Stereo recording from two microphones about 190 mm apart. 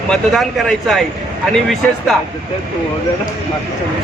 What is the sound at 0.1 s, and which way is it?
Speech, centre (ahead or behind).